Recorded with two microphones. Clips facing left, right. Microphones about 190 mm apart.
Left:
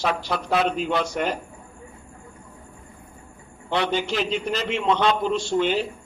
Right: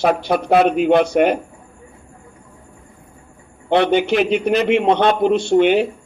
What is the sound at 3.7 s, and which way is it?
Speech, 60° right (ahead or behind).